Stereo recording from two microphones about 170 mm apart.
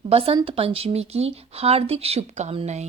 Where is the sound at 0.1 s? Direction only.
35° right (ahead or behind).